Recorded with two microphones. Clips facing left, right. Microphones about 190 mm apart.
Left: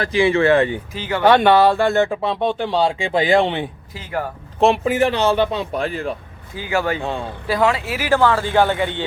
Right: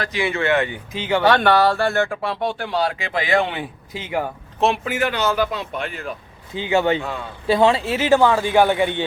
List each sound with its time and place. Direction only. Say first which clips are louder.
0.0 s speech: left 6 dB; 30° left (ahead or behind)
0.9 s speech: right 5 dB; 20° right (ahead or behind)
1.2 s speech: left 4 dB; 15° left (ahead or behind)
4.6 s a man's voice: left 5 dB; 30° left (ahead or behind)
6.5 s speech: right 3 dB; 20° right (ahead or behind)
7.0 s speech: left 4 dB; 25° left (ahead or behind)
7.4 s speech: right 3 dB; 25° right (ahead or behind)